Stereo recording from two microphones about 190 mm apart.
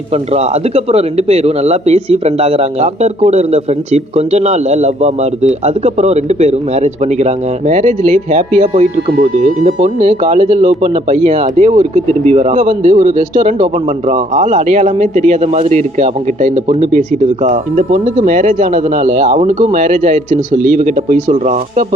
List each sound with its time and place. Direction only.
0.1 s speech: 35° right (ahead or behind)